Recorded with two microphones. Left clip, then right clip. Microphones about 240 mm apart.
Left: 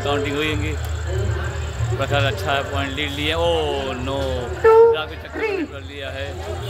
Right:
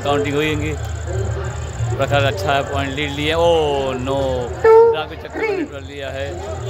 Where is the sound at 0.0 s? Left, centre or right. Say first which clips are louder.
Right 3 dB; centre.